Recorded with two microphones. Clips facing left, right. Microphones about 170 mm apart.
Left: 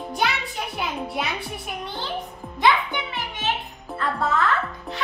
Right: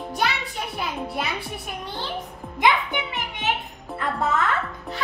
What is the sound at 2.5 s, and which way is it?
Music, 20° right (ahead or behind).